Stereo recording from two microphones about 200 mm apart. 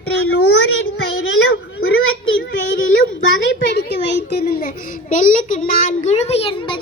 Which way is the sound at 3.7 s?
55° left (ahead or behind).